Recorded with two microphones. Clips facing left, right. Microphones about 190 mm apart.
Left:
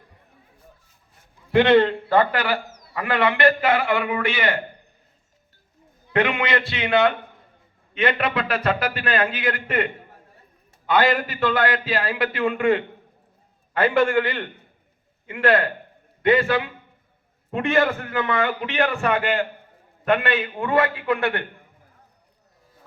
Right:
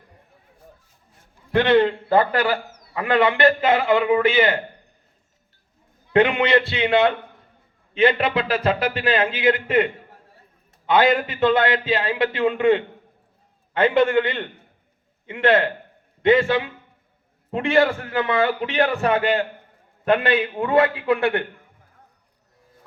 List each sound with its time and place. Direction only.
1.5 s a man's voice: 15° left (ahead or behind)
2.3 s a man's voice: 50° right (ahead or behind)
2.9 s a man's voice: 25° right (ahead or behind)
6.1 s a man's voice: 30° right (ahead or behind)
10.8 s a man's voice: 20° right (ahead or behind)
20.6 s a man's voice: 20° right (ahead or behind)